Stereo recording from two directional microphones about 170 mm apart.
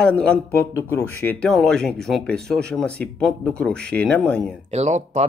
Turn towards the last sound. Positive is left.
turn(degrees=-40)  # may be behind; listen again after turning